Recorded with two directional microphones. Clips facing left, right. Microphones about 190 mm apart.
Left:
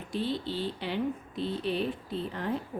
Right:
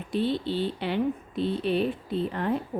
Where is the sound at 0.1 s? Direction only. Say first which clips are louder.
Right 5 dB; 60° right (ahead or behind).